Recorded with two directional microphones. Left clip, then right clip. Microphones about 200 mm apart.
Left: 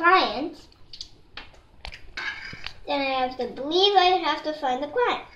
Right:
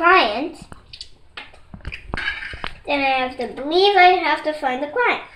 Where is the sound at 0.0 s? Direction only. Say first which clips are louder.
Right 5 dB; 15° left (ahead or behind).